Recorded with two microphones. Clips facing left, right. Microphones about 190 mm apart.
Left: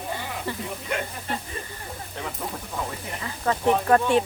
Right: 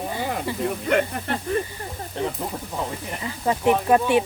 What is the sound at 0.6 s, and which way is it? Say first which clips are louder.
Speech: right 8 dB; 60° right (ahead or behind).